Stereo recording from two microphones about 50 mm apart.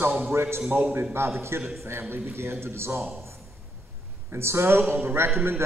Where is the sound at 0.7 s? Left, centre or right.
Right.